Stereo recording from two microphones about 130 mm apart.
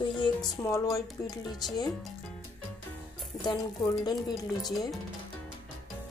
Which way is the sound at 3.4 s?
35° left (ahead or behind).